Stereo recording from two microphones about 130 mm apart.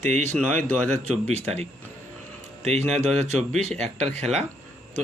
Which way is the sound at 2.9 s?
60° right (ahead or behind).